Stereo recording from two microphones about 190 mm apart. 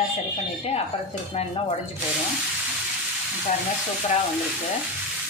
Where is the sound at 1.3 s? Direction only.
35° left (ahead or behind).